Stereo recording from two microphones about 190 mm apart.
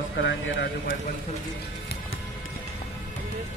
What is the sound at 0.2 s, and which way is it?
Speech, 70° left (ahead or behind).